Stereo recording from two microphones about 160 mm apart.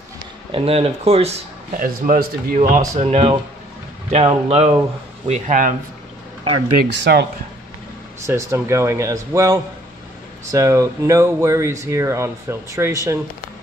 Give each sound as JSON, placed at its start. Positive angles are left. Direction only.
{"t": 0.5, "sound": "speech", "side_deg": -40}
{"t": 1.8, "sound": "speech", "side_deg": -60}
{"t": 2.9, "sound": "speech", "side_deg": -45}
{"t": 5.3, "sound": "speech", "side_deg": -55}
{"t": 6.9, "sound": "speech", "side_deg": -90}
{"t": 8.2, "sound": "speech", "side_deg": -15}